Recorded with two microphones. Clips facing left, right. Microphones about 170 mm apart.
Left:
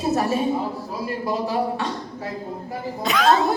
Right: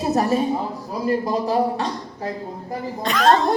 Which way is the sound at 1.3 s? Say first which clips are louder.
Right 3 dB; 35° right (ahead or behind).